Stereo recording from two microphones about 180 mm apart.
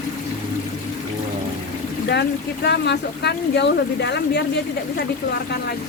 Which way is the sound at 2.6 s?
70° left (ahead or behind).